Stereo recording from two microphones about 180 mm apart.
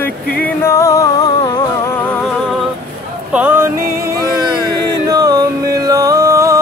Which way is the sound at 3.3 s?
10° right (ahead or behind).